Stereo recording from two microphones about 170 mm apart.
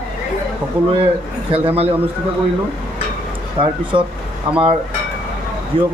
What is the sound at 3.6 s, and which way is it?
Speech, 30° right (ahead or behind).